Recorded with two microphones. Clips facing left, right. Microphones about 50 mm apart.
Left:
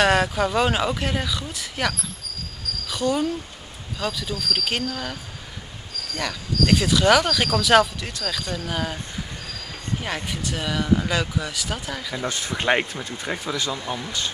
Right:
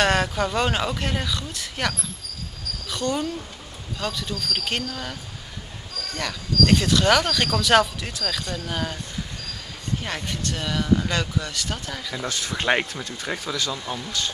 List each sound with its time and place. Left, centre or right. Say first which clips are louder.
0.0 s speech: left 2 dB; centre
6.1 s speech: right 1 dB; centre
10.0 s speech: left 2 dB; centre
12.3 s speech: left 1 dB; centre